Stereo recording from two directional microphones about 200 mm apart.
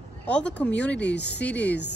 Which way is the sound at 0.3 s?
5° left (ahead or behind).